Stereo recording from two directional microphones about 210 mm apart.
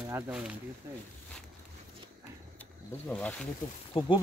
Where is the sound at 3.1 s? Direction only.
5° left (ahead or behind).